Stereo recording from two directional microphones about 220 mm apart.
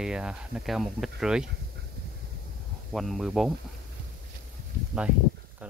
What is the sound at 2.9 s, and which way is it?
Speech, centre (ahead or behind).